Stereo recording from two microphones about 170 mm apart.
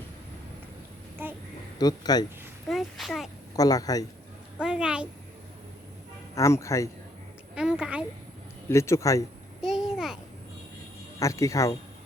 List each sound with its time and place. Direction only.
1.2 s child singing: 15° right (ahead or behind)
1.8 s speech: 25° left (ahead or behind)
2.6 s a child's voice: centre (ahead or behind)
3.5 s speech: 20° left (ahead or behind)
4.6 s a woman's voice: 5° right (ahead or behind)
6.3 s a man's voice: 15° left (ahead or behind)
7.5 s speech: 5° right (ahead or behind)
8.7 s a man's voice: 15° left (ahead or behind)
9.6 s a sound: 5° right (ahead or behind)
11.2 s speech: 20° left (ahead or behind)